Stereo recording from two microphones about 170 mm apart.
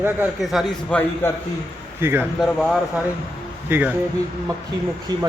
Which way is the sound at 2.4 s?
Centre (ahead or behind).